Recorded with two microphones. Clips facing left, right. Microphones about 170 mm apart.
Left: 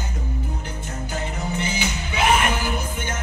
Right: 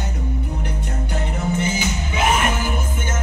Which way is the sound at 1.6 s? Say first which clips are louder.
Right 3 dB; 50° right (ahead or behind).